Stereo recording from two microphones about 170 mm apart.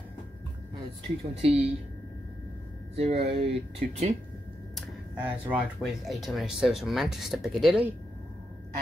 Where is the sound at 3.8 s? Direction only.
60° right (ahead or behind).